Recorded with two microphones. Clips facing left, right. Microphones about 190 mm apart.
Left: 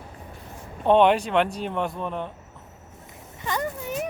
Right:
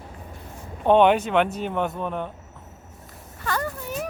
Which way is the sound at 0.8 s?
Centre (ahead or behind).